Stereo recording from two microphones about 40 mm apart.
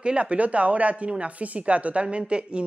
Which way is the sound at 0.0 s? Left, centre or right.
Right.